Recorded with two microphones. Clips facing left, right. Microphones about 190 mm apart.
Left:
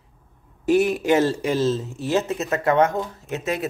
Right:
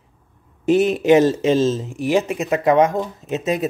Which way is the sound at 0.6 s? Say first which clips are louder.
Right 3 dB; 20° right (ahead or behind).